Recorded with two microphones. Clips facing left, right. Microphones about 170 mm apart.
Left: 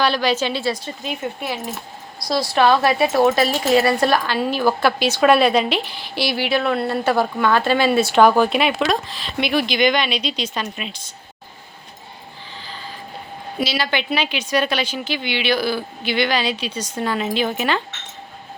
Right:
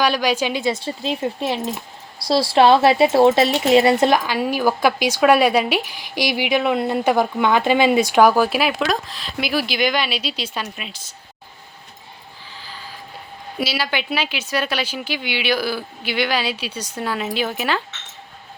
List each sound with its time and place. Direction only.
0.0 s speech: 10° right (ahead or behind)
0.7 s a woman's voice: 30° right (ahead or behind); by 11.1 s 5° right (ahead or behind)
12.6 s vehicle: 10° right (ahead or behind)
13.6 s speech: 10° right (ahead or behind)